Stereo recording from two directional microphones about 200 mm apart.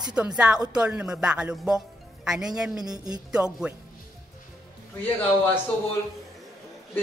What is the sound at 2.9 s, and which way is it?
Speech, 20° right (ahead or behind).